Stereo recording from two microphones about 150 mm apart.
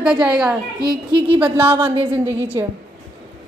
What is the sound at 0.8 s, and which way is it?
Speech, 30° right (ahead or behind).